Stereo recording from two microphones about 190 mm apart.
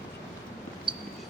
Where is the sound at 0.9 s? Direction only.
25° right (ahead or behind).